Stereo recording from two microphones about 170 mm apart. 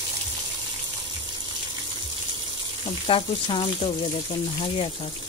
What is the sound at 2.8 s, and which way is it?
Speech, 35° left (ahead or behind).